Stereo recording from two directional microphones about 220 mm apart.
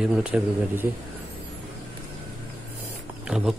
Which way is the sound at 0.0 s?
5° right (ahead or behind).